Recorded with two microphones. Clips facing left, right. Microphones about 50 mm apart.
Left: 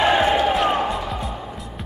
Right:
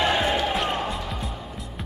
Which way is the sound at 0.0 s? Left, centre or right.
Centre.